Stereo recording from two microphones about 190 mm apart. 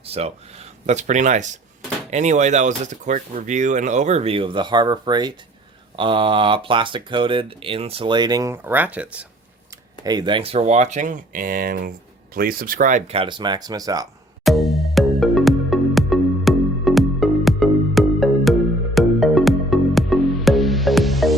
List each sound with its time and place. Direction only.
0.0 s speech: 30° right (ahead or behind); by 9.0 s 10° right (ahead or behind)
10.0 s speech: 20° right (ahead or behind)
14.4 s music: centre (ahead or behind)